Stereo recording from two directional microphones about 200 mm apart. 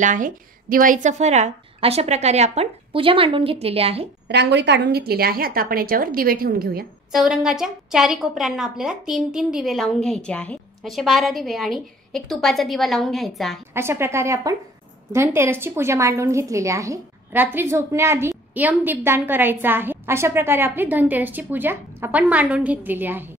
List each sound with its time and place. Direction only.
0.0 s a woman's voice: 40° right (ahead or behind)
4.3 s a woman's voice: 60° right (ahead or behind)
7.1 s a woman's voice: centre (ahead or behind)
13.7 s a woman's voice: 10° right (ahead or behind)